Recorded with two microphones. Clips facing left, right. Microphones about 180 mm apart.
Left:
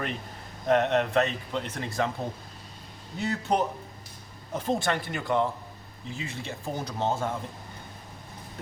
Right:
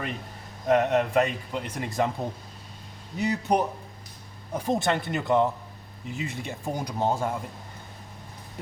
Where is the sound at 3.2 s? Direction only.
15° right (ahead or behind).